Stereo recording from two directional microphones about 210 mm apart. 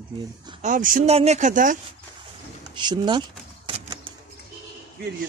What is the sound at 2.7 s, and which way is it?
Typewriter, 20° right (ahead or behind).